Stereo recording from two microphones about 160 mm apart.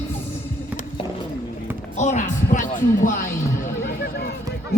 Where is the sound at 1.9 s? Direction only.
50° left (ahead or behind).